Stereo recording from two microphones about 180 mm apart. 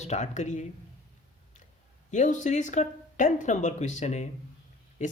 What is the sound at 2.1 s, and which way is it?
Speech, 45° left (ahead or behind).